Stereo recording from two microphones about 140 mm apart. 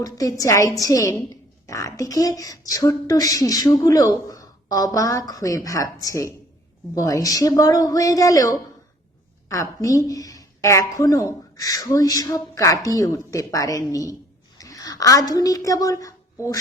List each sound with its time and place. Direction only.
0.0 s a woman's voice: 25° left (ahead or behind)